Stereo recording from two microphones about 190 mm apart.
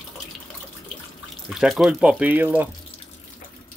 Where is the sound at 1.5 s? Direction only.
Centre (ahead or behind).